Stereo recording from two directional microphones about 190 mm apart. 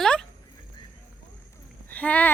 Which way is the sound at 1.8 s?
10° left (ahead or behind).